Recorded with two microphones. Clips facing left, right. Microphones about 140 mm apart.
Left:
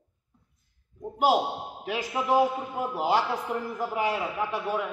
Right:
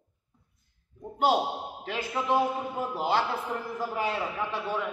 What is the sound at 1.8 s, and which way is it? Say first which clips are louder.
A man's voice: left 2 dB; 15° left (ahead or behind).